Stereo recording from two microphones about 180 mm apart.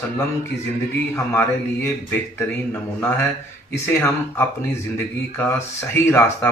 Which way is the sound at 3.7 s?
15° left (ahead or behind).